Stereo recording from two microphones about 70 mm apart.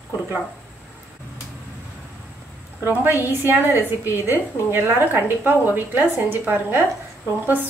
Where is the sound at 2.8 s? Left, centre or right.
Right.